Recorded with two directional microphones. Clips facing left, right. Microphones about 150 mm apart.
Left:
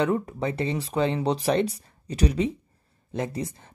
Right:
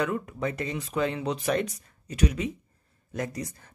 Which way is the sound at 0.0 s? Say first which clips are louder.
Left 4 dB; 30° left (ahead or behind).